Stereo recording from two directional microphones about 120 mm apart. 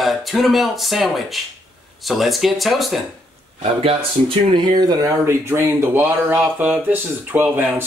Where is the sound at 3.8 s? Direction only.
50° right (ahead or behind).